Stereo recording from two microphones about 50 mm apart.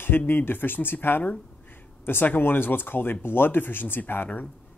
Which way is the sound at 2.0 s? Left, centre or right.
Left.